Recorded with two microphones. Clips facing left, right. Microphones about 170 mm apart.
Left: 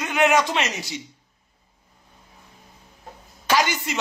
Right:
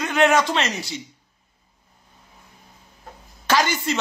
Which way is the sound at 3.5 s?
15° left (ahead or behind).